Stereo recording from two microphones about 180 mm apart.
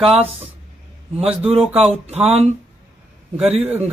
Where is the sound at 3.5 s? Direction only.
35° right (ahead or behind).